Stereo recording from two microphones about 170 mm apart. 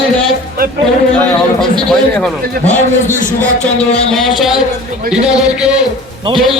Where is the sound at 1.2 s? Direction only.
5° left (ahead or behind).